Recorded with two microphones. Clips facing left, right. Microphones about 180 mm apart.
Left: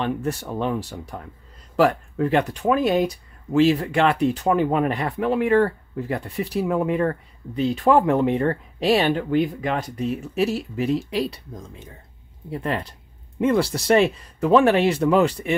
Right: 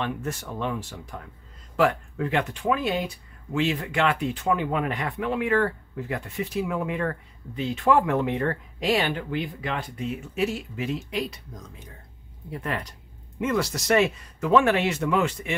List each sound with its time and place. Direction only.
0.0 s speech: 35° left (ahead or behind)